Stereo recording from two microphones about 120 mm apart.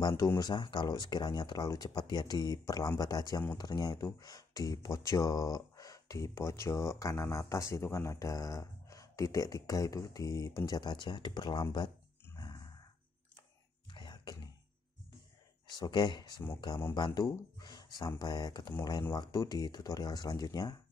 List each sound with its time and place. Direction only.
0.1 s speech: 20° left (ahead or behind)
0.4 s speech: 40° left (ahead or behind)
12.4 s music: 35° left (ahead or behind)
13.9 s a sound: 40° left (ahead or behind)
15.7 s speech: 35° left (ahead or behind)